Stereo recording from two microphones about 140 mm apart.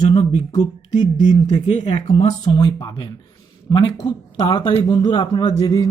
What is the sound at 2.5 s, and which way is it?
Speech, 30° left (ahead or behind).